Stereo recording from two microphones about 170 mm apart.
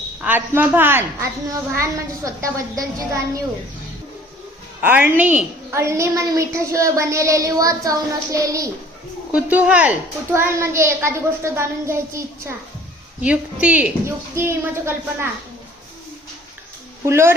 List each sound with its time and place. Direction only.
0.2 s a woman's voice: 10° right (ahead or behind)
4.8 s a woman's voice: 10° right (ahead or behind)
9.3 s a woman's voice: 10° right (ahead or behind)
17.1 s a woman's voice: 15° right (ahead or behind)